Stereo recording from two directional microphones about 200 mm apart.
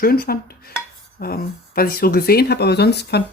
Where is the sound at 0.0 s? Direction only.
50° left (ahead or behind).